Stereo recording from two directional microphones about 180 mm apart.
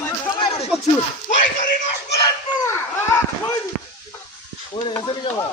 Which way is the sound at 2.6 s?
15° left (ahead or behind).